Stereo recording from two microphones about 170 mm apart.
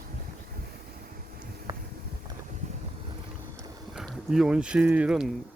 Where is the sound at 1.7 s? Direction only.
30° right (ahead or behind).